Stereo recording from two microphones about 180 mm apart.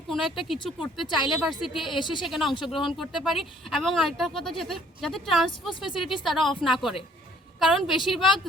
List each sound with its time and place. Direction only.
0.1 s speech: centre (ahead or behind)
1.0 s speech: 25° left (ahead or behind)
1.3 s speech: centre (ahead or behind)
2.0 s speech: 25° left (ahead or behind)
2.2 s speech: centre (ahead or behind)
5.5 s speech: 25° left (ahead or behind)
6.2 s speech: centre (ahead or behind)
6.5 s speech: 25° left (ahead or behind)
7.6 s speech: centre (ahead or behind)